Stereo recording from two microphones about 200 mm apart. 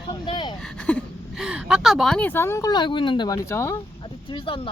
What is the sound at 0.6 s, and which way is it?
A woman's voice, 5° left (ahead or behind).